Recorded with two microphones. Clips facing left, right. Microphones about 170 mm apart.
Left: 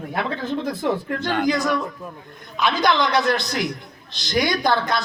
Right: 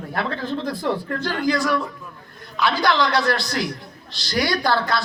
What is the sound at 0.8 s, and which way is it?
A woman's voice, 20° left (ahead or behind).